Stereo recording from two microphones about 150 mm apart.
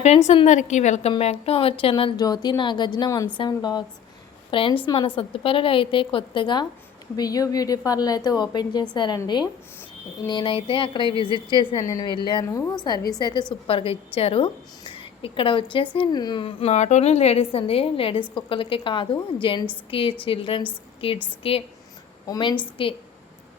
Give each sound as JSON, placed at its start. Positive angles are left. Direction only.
{"t": 0.4, "sound": "a woman's voice", "side_deg": 50}